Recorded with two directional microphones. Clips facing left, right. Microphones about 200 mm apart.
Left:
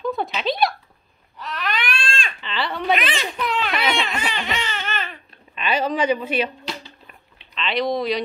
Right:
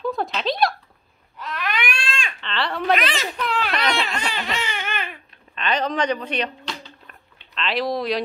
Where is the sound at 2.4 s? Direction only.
5° left (ahead or behind).